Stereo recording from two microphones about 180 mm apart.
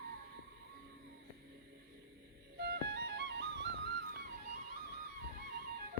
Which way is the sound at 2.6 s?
65° right (ahead or behind).